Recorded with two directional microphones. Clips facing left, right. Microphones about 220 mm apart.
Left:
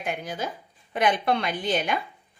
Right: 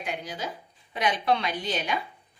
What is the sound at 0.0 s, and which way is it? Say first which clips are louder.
A woman's voice: left 3 dB; 50° left (ahead or behind).